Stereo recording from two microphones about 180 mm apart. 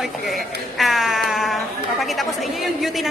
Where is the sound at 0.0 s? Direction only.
Centre (ahead or behind).